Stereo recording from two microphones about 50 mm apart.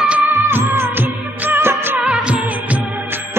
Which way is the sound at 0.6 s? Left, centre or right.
Right.